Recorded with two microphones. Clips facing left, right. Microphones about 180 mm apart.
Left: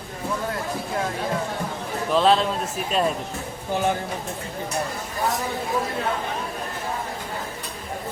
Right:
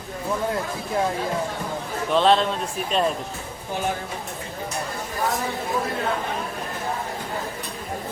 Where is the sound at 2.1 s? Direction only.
Centre (ahead or behind).